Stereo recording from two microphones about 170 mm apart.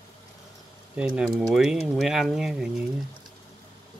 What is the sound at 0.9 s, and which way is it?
Speech, 5° right (ahead or behind).